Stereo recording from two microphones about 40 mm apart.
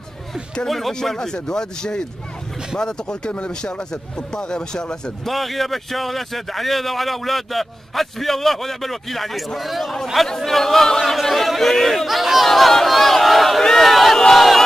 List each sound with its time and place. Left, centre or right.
0.7 s a man's voice: centre
3.3 s speech: left
5.2 s a man's voice: centre
13.7 s a sound: centre